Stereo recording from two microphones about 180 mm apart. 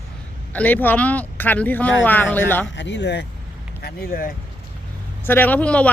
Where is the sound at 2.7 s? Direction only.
80° left.